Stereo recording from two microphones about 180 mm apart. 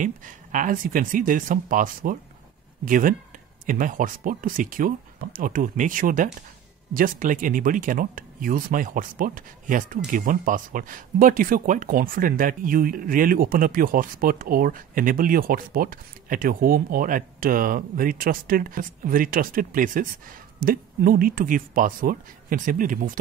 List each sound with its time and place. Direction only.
0.0 s speech: 45° right (ahead or behind)